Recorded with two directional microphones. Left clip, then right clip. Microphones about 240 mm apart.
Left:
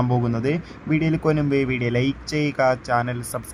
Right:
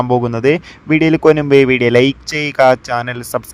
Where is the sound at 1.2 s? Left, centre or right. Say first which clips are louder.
Right 12 dB; right.